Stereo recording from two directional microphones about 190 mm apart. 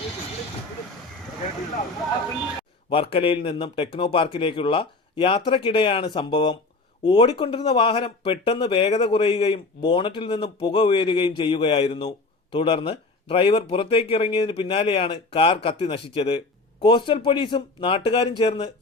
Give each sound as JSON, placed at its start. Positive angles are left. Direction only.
{"t": 2.9, "sound": "speech", "side_deg": 30}